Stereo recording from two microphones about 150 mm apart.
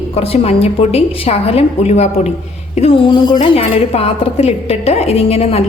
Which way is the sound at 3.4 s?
40° left (ahead or behind).